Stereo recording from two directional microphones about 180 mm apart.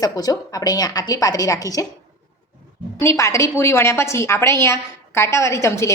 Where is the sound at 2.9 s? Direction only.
15° left (ahead or behind).